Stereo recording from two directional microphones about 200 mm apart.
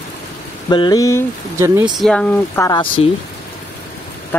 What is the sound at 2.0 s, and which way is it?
Speech, 5° left (ahead or behind).